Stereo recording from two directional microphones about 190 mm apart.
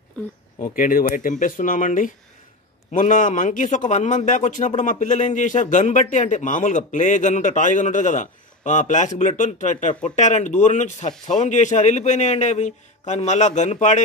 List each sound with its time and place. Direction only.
0.7 s a man's voice: 45° left (ahead or behind)